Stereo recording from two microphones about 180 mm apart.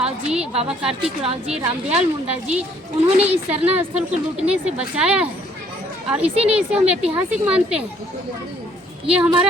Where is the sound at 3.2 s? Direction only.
35° right (ahead or behind).